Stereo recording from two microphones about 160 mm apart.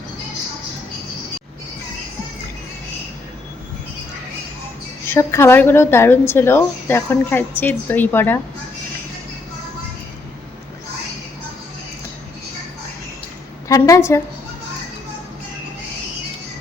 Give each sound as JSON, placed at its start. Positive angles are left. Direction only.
{"t": 5.1, "sound": "a woman's voice", "side_deg": 15}
{"t": 13.7, "sound": "a woman's voice", "side_deg": 20}